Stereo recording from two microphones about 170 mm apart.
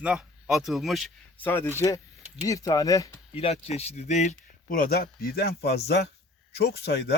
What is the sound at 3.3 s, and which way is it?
Speech, 35° left (ahead or behind).